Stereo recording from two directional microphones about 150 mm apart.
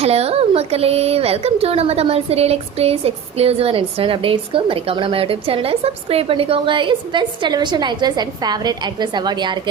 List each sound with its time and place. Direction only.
0.0 s speech: 45° right (ahead or behind)